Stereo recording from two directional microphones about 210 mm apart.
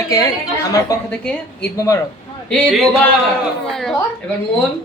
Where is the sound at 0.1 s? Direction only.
15° left (ahead or behind).